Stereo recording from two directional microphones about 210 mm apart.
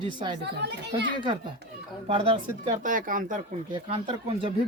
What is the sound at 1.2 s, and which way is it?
Speech, 25° right (ahead or behind).